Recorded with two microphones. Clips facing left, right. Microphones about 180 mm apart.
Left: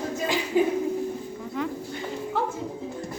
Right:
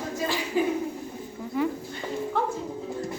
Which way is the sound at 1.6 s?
5° right (ahead or behind).